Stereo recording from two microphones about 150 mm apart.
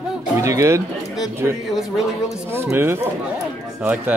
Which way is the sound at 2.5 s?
15° right (ahead or behind).